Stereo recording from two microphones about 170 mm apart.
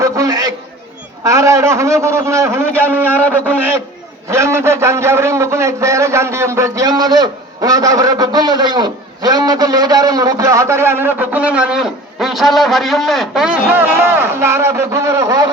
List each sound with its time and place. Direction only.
0.0 s a sound: 20° right (ahead or behind)
1.2 s a man's voice: 20° right (ahead or behind)
4.3 s a man's voice: 15° right (ahead or behind)